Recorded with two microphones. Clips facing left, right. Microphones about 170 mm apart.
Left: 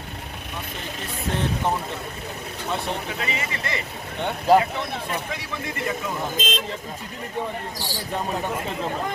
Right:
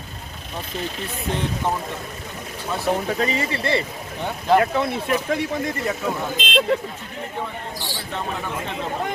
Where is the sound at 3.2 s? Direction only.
35° right (ahead or behind).